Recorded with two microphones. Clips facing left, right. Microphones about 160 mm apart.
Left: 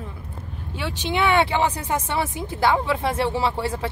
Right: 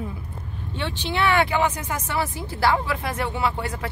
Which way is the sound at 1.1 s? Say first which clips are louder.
Left 1 dB; 20° left (ahead or behind).